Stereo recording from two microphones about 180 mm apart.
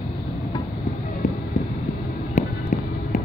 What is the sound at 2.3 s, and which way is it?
Fireworks, 40° left (ahead or behind).